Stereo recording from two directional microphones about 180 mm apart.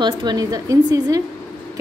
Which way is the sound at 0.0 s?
25° right (ahead or behind).